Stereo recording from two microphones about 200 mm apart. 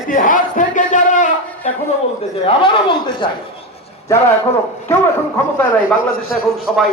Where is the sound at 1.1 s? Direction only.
40° left (ahead or behind).